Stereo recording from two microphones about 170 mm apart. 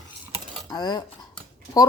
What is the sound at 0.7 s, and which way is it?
Speech, 25° left (ahead or behind).